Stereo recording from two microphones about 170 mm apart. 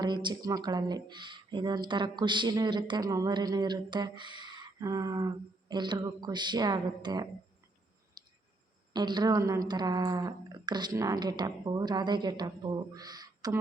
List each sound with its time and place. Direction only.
0.0 s speech: 25° right (ahead or behind)
8.2 s clicking: 25° right (ahead or behind)
8.9 s speech: 25° right (ahead or behind)